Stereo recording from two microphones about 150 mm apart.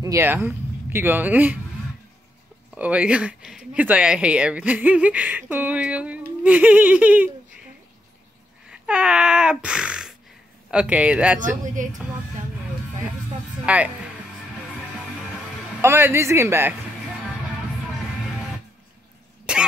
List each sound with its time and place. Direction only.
0.0 s speech: 20° right (ahead or behind)
2.7 s speech: 10° right (ahead or behind)
8.6 s a sound: 5° right (ahead or behind)
10.7 s speech: 5° right (ahead or behind)
11.6 s speech: 60° right (ahead or behind)
13.7 s speech: 10° right (ahead or behind)
15.8 s speech: 15° right (ahead or behind)
19.5 s cough: 5° right (ahead or behind)